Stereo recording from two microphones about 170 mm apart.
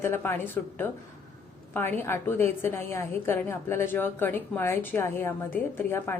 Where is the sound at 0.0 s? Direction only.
15° left (ahead or behind).